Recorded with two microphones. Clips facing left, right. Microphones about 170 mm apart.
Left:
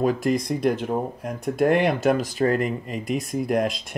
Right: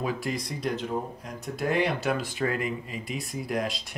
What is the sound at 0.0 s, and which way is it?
Speech, 45° left (ahead or behind).